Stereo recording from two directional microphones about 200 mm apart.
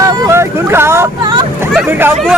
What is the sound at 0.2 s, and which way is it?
Vehicle, 15° right (ahead or behind).